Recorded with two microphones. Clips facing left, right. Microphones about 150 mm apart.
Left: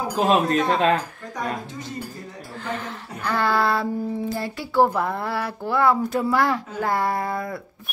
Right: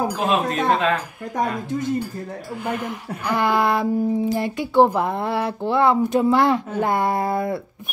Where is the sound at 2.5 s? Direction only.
10° right (ahead or behind).